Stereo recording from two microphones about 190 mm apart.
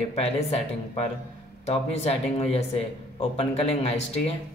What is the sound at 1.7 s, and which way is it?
Speech, 35° left (ahead or behind).